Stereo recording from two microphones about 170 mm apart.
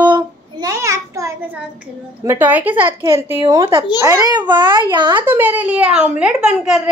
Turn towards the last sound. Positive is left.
turn(degrees=-5)  # may be behind; listen again after turning